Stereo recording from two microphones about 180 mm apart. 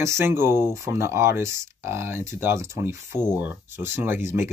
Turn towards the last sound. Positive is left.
turn(degrees=-15)  # may be behind; listen again after turning